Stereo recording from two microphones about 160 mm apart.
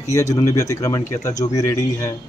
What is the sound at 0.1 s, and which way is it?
Speech, 20° left (ahead or behind).